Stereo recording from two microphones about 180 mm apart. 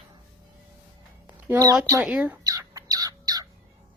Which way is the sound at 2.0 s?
5° right (ahead or behind).